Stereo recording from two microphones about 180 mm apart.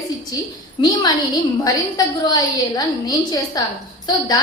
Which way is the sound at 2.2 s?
20° left (ahead or behind).